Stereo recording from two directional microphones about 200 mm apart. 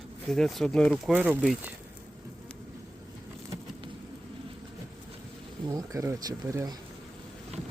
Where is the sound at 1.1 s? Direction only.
10° right (ahead or behind).